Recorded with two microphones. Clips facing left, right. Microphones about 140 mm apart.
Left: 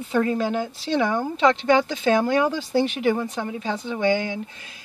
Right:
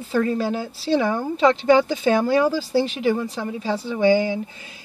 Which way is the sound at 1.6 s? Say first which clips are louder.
Right 3 dB; 10° right (ahead or behind).